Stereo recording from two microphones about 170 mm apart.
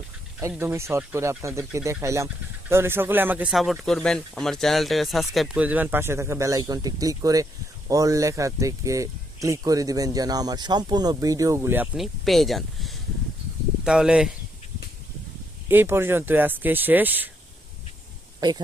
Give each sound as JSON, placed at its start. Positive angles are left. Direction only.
{"t": 0.3, "sound": "speech", "side_deg": -10}
{"t": 11.9, "sound": "speech", "side_deg": 0}
{"t": 15.7, "sound": "speech", "side_deg": -15}
{"t": 18.3, "sound": "speech", "side_deg": -25}